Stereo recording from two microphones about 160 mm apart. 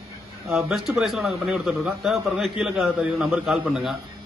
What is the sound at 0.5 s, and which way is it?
A man's voice, centre (ahead or behind).